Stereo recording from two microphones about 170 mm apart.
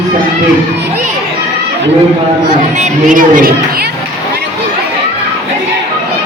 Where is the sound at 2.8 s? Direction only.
50° right (ahead or behind).